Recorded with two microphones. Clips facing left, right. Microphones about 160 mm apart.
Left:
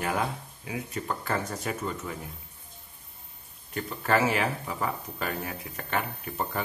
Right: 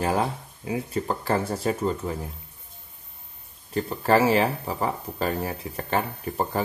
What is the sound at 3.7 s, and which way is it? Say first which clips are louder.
Speech: right 6 dB; 35° right (ahead or behind).